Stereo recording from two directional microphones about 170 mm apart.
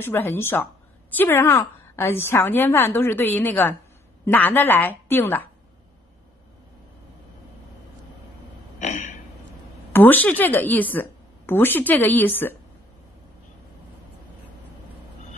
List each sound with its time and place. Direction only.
0.0 s a woman's voice: 10° left (ahead or behind)
8.7 s throat clearing: 45° left (ahead or behind)
9.9 s a woman's voice: 10° left (ahead or behind)